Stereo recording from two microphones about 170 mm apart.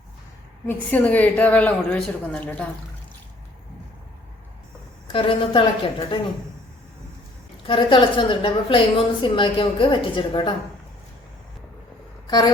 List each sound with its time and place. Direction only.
0.7 s a woman's voice: 10° left (ahead or behind)
5.1 s a woman's voice: 30° left (ahead or behind)
7.7 s a woman's voice: 30° left (ahead or behind)